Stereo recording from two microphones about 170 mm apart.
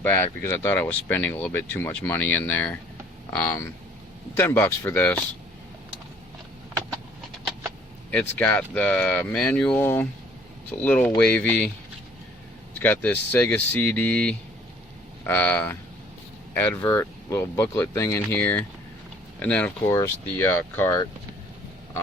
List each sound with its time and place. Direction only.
0.1 s speech: 15° left (ahead or behind)
8.1 s speech: 10° left (ahead or behind)
12.8 s speech: 10° left (ahead or behind)